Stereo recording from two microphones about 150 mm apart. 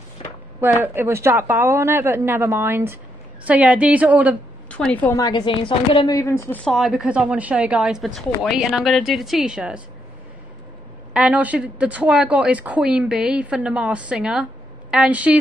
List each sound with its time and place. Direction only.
0.2 s a sound: 45° left (ahead or behind)
0.6 s a woman's voice: 15° right (ahead or behind)
4.6 s a woman's voice: 10° left (ahead or behind)
5.1 s a woman's voice: 25° left (ahead or behind)
6.1 s speech: 20° left (ahead or behind)
6.6 s a woman's voice: centre (ahead or behind)
11.1 s a woman's voice: 10° right (ahead or behind)